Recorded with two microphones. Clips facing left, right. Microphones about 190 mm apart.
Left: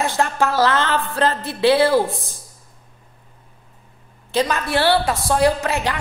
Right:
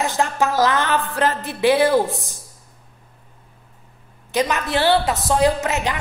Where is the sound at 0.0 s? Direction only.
15° right (ahead or behind).